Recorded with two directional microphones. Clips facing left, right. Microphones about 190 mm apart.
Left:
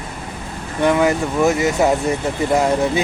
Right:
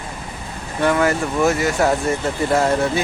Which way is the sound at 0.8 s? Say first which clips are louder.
Left 2 dB; 15° left (ahead or behind).